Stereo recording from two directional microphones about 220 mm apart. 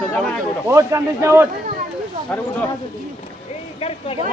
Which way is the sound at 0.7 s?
15° right (ahead or behind).